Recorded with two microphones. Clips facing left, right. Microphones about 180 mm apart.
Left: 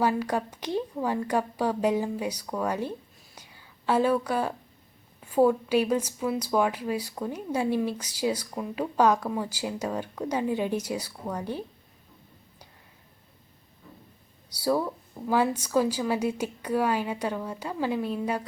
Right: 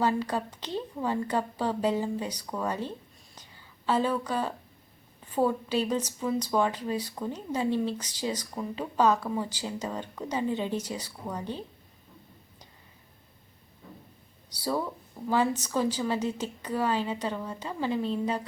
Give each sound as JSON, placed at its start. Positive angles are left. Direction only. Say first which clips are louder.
{"t": 0.0, "sound": "speech", "louder": "left 2 dB", "side_deg": 10}
{"t": 3.3, "sound": "whispering", "louder": "left 3 dB", "side_deg": 10}
{"t": 5.2, "sound": "speech", "louder": "left 5 dB", "side_deg": 10}
{"t": 14.6, "sound": "speech", "louder": "left 4 dB", "side_deg": 10}